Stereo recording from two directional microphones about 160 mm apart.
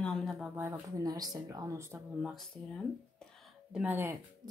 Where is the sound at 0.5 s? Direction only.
15° right (ahead or behind).